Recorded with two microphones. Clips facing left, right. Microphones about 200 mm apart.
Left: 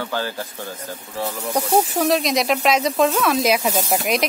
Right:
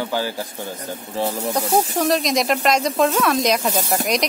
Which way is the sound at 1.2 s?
30° right (ahead or behind).